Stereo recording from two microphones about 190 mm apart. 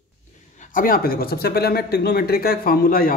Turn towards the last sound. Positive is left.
turn(degrees=50)  # may be behind; listen again after turning